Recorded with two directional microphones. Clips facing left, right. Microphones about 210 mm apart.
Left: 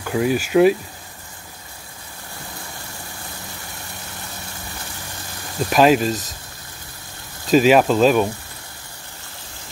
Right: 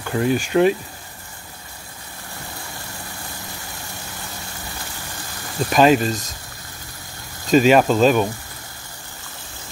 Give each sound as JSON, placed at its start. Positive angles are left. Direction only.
{"t": 0.0, "sound": "speech", "side_deg": 5}
{"t": 5.6, "sound": "speech", "side_deg": 0}
{"t": 7.4, "sound": "speech", "side_deg": 0}